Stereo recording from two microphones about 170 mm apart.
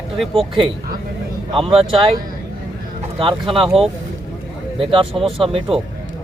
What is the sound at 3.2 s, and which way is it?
Speech, 30° right (ahead or behind).